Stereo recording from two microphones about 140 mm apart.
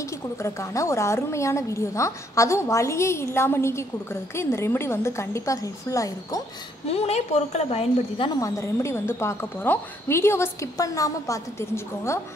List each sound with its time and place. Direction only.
0.4 s a woman's voice: 20° left (ahead or behind)
6.9 s a woman's voice: 45° left (ahead or behind)
8.4 s a woman's voice: 20° left (ahead or behind)